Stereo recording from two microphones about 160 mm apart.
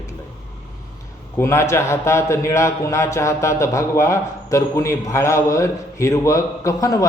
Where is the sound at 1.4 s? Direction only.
15° left (ahead or behind).